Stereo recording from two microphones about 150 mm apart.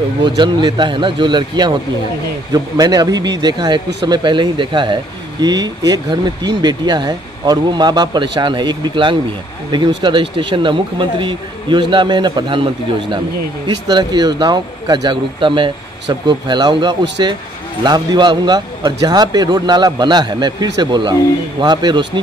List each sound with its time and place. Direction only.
0.4 s speech: 30° right (ahead or behind)
13.8 s speech: 25° right (ahead or behind)